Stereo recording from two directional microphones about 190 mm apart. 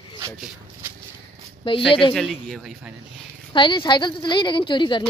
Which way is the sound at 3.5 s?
25° left (ahead or behind).